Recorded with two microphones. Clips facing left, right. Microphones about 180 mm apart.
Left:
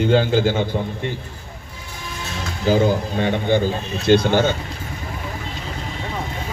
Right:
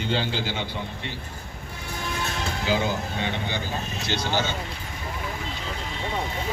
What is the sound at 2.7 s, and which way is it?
A man's voice, 45° left (ahead or behind).